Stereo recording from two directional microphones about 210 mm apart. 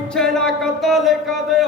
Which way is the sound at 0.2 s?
Centre (ahead or behind).